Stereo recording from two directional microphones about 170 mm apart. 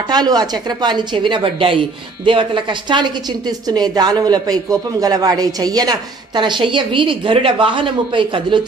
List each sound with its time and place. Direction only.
0.1 s a woman's voice: 25° right (ahead or behind)